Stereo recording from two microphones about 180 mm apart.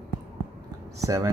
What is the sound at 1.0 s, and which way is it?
Speech, 20° right (ahead or behind).